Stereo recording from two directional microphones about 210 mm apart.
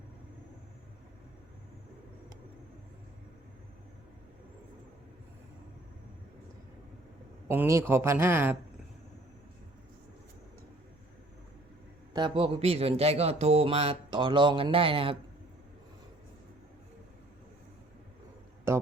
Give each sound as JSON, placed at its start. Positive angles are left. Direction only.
{"t": 7.4, "sound": "a man's voice", "side_deg": -10}
{"t": 12.1, "sound": "speech", "side_deg": -25}